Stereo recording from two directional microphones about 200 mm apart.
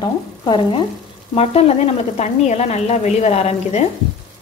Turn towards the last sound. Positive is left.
turn(degrees=30)  # may be behind; listen again after turning